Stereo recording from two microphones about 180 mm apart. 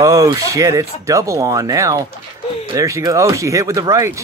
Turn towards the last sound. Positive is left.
turn(degrees=-15)  # may be behind; listen again after turning